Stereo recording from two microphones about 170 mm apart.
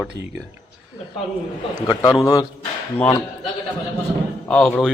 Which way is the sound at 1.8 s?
30° left (ahead or behind).